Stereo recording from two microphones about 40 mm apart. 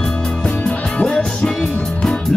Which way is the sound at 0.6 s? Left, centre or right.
Left.